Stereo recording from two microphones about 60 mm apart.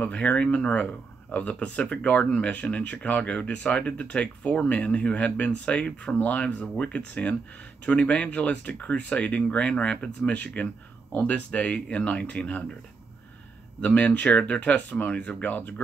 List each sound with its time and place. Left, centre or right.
0.0 s speech: centre
2.2 s speech: centre
2.5 s speech: left
13.7 s speech: left